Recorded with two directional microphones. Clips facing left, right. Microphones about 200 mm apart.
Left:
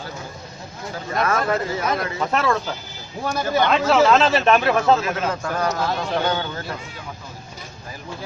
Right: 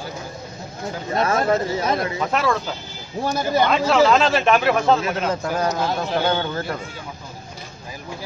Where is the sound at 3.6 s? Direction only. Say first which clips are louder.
Left 1 dB; centre (ahead or behind).